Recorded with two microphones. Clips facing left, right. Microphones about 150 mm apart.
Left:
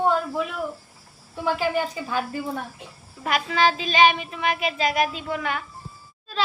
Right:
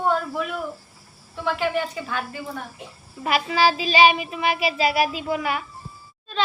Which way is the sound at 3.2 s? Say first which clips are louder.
Right 1 dB; 5° right (ahead or behind).